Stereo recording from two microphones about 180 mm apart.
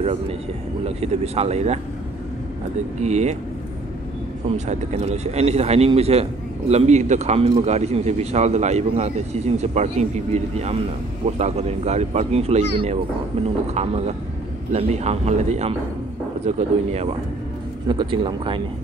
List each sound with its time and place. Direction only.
0.0 s a man's voice: 35° right (ahead or behind)
3.0 s a man's voice: 40° right (ahead or behind)
4.6 s a man's voice: 40° right (ahead or behind)
17.8 s a man's voice: 25° right (ahead or behind)